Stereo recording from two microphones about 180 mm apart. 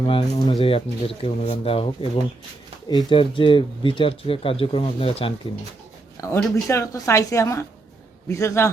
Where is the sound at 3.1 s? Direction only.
30° left (ahead or behind).